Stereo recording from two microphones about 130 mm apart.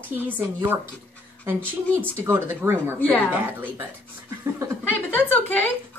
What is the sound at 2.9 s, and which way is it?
Speech, 10° left (ahead or behind).